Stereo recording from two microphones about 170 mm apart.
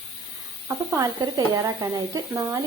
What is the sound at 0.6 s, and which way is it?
A woman's voice, 20° right (ahead or behind).